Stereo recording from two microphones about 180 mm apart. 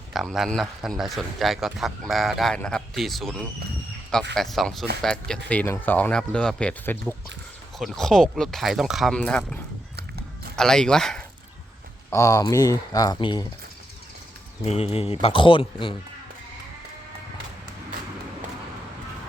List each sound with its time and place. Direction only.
0.1 s a man's voice: centre (ahead or behind)
9.9 s mechanisms: 60° right (ahead or behind)
10.6 s a man's voice: 5° left (ahead or behind)
12.1 s speech: 15° left (ahead or behind)
14.6 s speech: 35° left (ahead or behind)